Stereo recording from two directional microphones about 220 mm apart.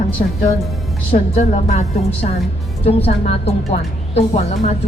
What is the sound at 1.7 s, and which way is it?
Speech, 30° left (ahead or behind).